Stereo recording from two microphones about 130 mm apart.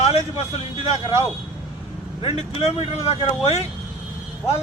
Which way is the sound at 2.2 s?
45° left (ahead or behind).